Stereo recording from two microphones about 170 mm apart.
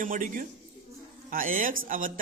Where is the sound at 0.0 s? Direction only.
50° right (ahead or behind).